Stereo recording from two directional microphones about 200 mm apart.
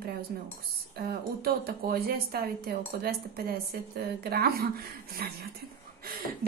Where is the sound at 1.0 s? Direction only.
50° right (ahead or behind).